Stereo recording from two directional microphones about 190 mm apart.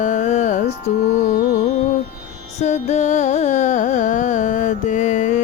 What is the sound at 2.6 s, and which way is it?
Carnatic music, 35° left (ahead or behind).